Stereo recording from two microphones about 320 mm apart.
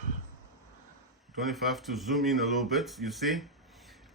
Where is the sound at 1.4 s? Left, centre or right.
Centre.